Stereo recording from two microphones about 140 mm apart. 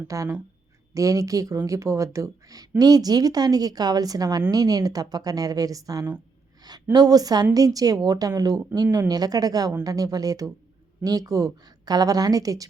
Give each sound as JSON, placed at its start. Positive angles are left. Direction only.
{"t": 0.1, "sound": "a woman's voice", "side_deg": -25}
{"t": 6.6, "sound": "a sound", "side_deg": -30}
{"t": 6.9, "sound": "a woman's voice", "side_deg": -25}